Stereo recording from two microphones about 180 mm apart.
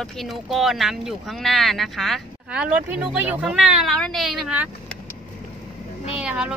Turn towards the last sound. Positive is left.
turn(degrees=-5)  # may be behind; listen again after turning